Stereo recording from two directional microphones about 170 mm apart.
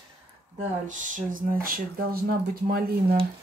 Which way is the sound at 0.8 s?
50° right (ahead or behind).